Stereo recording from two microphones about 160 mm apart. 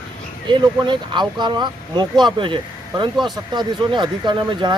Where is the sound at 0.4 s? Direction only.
30° right (ahead or behind).